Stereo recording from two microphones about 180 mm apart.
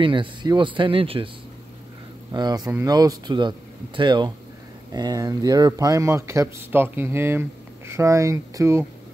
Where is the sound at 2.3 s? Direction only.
25° right (ahead or behind).